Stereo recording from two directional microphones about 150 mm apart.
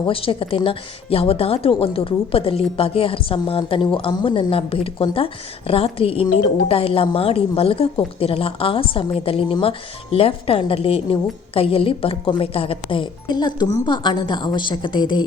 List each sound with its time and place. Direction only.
0.1 s a woman's voice: 40° left (ahead or behind)